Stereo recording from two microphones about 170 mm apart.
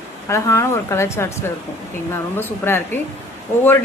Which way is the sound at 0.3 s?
15° left (ahead or behind).